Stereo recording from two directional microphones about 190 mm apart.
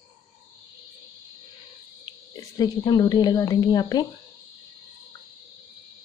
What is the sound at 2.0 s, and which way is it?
A woman's voice, 20° left (ahead or behind).